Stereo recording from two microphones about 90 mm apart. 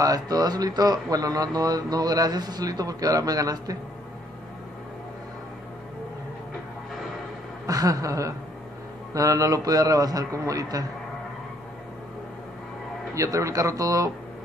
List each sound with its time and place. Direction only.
0.0 s speech: 45° right (ahead or behind)
7.6 s a man's voice: 40° right (ahead or behind)
13.1 s a man's voice: 35° right (ahead or behind)